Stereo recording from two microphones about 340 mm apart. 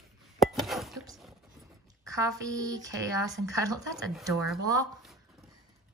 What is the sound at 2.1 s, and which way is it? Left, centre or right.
Speech, centre.